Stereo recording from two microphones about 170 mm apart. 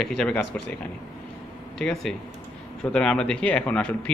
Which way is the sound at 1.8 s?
Centre (ahead or behind).